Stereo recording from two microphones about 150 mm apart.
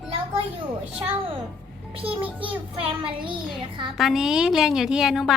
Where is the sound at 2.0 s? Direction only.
35° right (ahead or behind).